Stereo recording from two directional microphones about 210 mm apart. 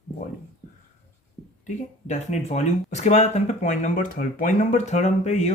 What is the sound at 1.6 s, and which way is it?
Speech, 35° left (ahead or behind).